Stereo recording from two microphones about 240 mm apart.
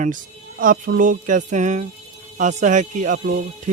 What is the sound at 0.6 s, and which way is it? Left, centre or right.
Speech, right.